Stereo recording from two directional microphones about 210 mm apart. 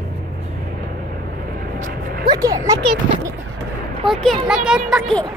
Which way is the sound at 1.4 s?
45° right (ahead or behind).